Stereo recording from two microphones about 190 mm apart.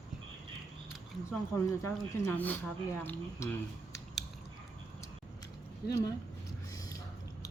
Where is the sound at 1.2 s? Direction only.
15° left (ahead or behind).